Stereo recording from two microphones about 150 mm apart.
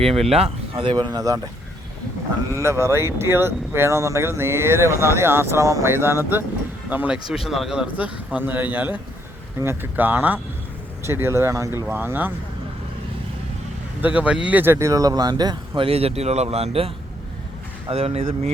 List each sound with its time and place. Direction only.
0.3 s speech: 40° right (ahead or behind); by 1.4 s 25° right (ahead or behind)
2.6 s speech: 20° right (ahead or behind)
14.0 s speech: 10° right (ahead or behind); by 18.5 s 40° right (ahead or behind)